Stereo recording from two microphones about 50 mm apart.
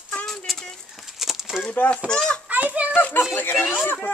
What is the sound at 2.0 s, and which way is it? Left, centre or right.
Speech, centre.